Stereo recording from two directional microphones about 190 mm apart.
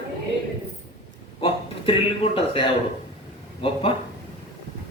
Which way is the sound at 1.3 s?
30° left (ahead or behind).